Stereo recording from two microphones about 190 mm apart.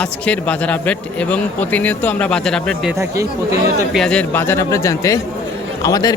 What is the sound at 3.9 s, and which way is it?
A man's voice, 5° left (ahead or behind).